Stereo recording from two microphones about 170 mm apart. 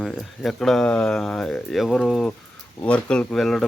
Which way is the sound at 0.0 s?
Centre (ahead or behind).